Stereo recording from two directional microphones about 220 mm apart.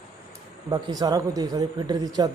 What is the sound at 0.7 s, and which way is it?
Speech, 15° right (ahead or behind).